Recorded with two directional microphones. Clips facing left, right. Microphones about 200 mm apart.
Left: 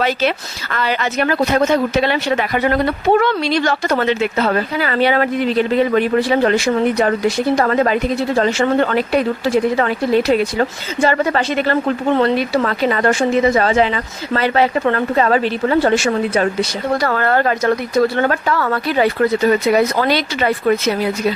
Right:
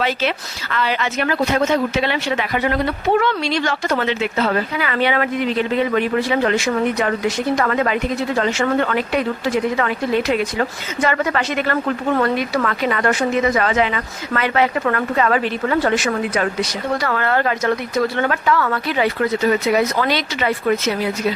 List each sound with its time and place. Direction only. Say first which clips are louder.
0.0 s speech: left 3 dB; 40° left (ahead or behind)